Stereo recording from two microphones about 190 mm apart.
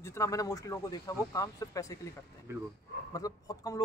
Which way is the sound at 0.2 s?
20° left (ahead or behind).